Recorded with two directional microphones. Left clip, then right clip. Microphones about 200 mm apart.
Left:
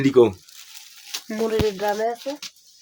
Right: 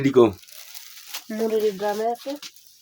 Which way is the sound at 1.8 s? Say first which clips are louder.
Left 2 dB; 30° left (ahead or behind).